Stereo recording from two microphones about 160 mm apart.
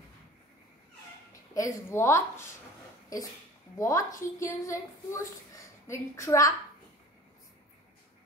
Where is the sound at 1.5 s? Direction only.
20° left (ahead or behind).